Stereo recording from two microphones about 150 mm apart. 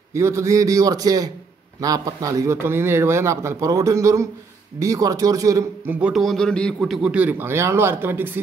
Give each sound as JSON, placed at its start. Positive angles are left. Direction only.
{"t": 0.1, "sound": "a man's voice", "side_deg": -20}
{"t": 5.9, "sound": "a man's voice", "side_deg": -5}